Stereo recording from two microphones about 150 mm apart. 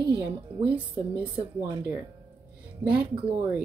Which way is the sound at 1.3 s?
25° right (ahead or behind).